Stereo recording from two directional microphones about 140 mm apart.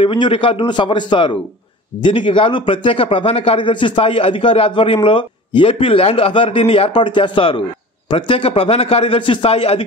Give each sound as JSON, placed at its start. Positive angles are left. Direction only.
{"t": 0.0, "sound": "a man's voice", "side_deg": 40}